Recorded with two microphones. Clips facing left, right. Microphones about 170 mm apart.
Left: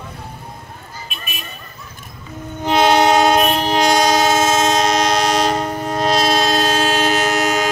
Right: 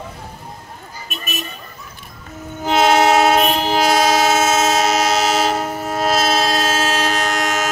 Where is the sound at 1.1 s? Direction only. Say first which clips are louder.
Right 9 dB; 45° right (ahead or behind).